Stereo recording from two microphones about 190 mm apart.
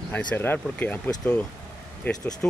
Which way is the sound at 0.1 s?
10° left (ahead or behind).